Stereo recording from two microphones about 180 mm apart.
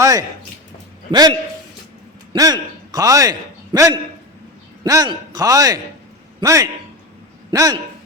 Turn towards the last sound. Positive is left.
turn(degrees=-20)  # may be behind; listen again after turning